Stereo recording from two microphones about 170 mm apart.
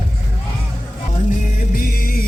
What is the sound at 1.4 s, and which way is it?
Music, 55° left (ahead or behind).